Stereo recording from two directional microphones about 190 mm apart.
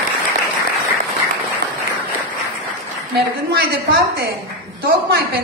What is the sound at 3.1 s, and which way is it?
A woman's voice, 55° right (ahead or behind).